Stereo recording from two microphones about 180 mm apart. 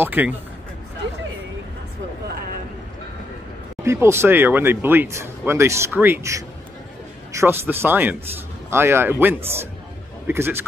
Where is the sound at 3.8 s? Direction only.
15° right (ahead or behind).